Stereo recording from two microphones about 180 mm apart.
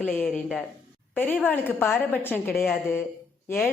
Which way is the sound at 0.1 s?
10° left (ahead or behind).